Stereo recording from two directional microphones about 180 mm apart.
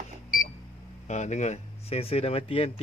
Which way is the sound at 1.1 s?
40° left (ahead or behind).